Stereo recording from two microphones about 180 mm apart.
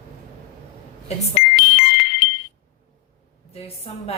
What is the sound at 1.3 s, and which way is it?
Music, 65° left (ahead or behind).